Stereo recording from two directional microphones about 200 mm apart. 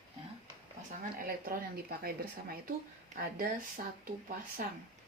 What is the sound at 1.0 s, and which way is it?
Speech, 45° right (ahead or behind).